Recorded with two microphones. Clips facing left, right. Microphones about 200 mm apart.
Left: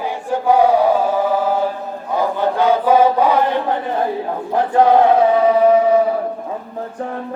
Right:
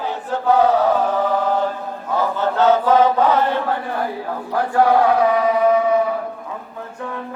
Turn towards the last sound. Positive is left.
turn(degrees=30)  # may be behind; listen again after turning